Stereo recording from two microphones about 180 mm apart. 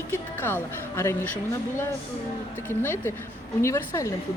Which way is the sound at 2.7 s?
15° left (ahead or behind).